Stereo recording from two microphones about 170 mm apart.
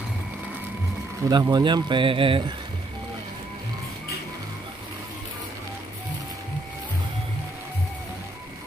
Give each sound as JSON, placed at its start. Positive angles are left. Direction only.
{"t": 1.3, "sound": "speech", "side_deg": -25}